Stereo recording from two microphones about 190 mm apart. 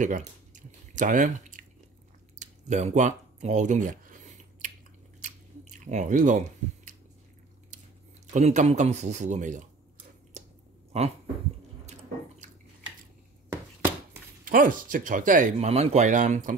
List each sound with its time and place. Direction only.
0.0 s squish: 40° right (ahead or behind)
2.3 s a sound: 40° right (ahead or behind)
5.2 s chewing: 40° right (ahead or behind)
8.3 s speech: 40° right (ahead or behind)
10.4 s a sound: 40° right (ahead or behind)
10.9 s speech: 35° right (ahead or behind)
11.8 s drip: 35° right (ahead or behind)
14.4 s speech: 45° right (ahead or behind)